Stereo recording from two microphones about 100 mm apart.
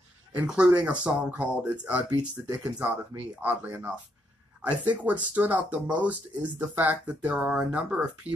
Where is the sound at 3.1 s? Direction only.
15° right (ahead or behind).